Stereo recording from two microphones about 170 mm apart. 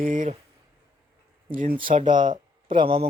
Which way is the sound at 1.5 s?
55° right (ahead or behind).